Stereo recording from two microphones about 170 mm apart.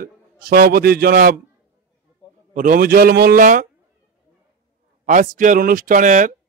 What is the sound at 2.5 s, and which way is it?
A man's voice, 50° right (ahead or behind).